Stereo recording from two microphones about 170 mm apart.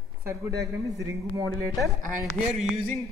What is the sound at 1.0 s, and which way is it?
Speech, 20° right (ahead or behind).